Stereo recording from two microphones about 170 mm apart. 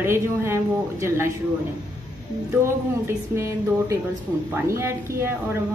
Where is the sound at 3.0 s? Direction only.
15° right (ahead or behind).